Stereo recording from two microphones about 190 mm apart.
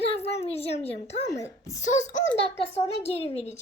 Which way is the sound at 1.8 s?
40° left (ahead or behind).